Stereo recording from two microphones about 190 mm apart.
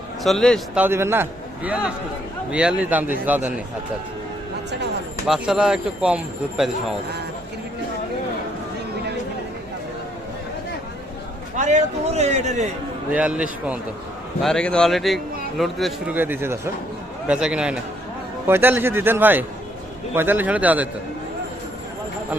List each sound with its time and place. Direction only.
0.2 s a man's voice: centre (ahead or behind)
0.8 s a man's voice: 15° right (ahead or behind)
5.3 s a man's voice: 5° right (ahead or behind)
11.5 s a man's voice: 40° right (ahead or behind)
13.1 s a man's voice: 5° right (ahead or behind)
14.4 s a man's voice: 5° left (ahead or behind)
16.1 s a man's voice: 10° right (ahead or behind)